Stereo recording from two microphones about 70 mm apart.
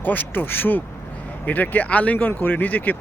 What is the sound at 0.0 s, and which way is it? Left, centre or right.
Speech, left.